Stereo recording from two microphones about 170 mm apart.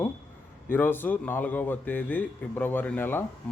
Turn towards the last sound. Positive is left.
turn(degrees=10)  # may be behind; listen again after turning